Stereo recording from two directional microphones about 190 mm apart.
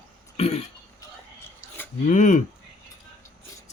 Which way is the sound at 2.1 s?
40° left (ahead or behind).